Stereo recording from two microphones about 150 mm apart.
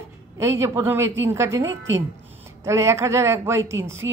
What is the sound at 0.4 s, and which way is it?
A woman's voice, 15° right (ahead or behind).